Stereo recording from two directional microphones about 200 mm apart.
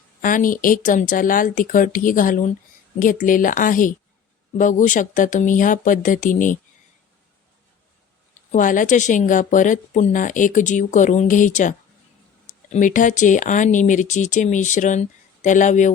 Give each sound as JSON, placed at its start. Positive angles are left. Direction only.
{"t": 0.2, "sound": "speech", "side_deg": 40}
{"t": 8.5, "sound": "speech", "side_deg": 40}